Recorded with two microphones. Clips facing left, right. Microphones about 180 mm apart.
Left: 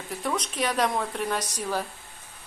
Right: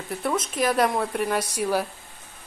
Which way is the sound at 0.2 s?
5° right (ahead or behind).